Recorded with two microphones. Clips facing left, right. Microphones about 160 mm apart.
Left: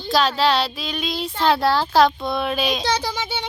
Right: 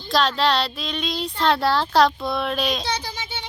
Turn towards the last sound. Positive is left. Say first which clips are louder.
# left 6 dB
turn(degrees=90)